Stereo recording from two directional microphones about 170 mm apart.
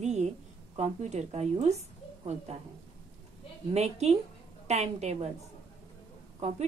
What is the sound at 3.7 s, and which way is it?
A woman's voice, 40° right (ahead or behind).